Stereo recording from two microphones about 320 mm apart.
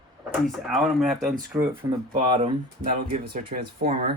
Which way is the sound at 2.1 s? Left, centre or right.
Centre.